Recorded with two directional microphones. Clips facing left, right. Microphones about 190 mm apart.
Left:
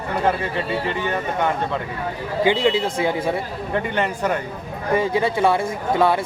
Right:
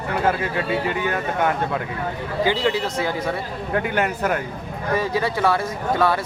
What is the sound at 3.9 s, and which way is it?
Speech, 5° right (ahead or behind).